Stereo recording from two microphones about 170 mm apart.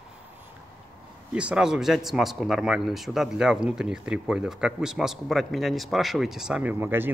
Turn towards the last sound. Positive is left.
turn(degrees=-10)  # may be behind; listen again after turning